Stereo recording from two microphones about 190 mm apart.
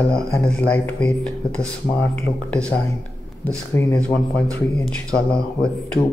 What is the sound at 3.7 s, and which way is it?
Speech, 15° left (ahead or behind).